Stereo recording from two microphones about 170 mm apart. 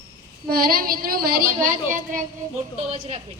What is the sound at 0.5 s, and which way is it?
A woman's voice, 60° right (ahead or behind).